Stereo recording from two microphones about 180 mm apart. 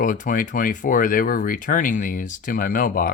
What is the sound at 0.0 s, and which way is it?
Speech, 45° left (ahead or behind).